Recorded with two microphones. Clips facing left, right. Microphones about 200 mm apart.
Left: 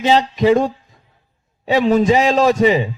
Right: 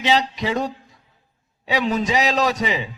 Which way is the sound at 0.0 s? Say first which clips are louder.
Left 7 dB; 45° left (ahead or behind).